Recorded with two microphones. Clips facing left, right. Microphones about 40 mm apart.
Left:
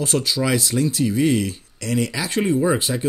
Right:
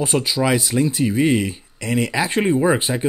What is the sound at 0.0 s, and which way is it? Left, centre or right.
Speech, centre.